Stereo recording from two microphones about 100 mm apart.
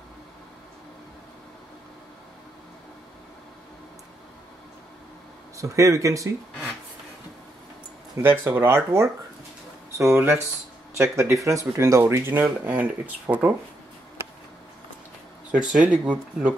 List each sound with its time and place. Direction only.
5.6 s speech: 35° right (ahead or behind)
8.2 s speech: 20° right (ahead or behind)
15.5 s speech: 10° right (ahead or behind)